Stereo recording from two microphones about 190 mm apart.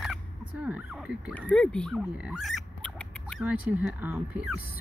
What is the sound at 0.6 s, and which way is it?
Speech, 5° right (ahead or behind).